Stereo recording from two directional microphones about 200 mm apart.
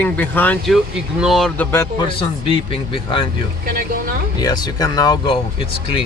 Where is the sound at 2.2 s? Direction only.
30° left (ahead or behind).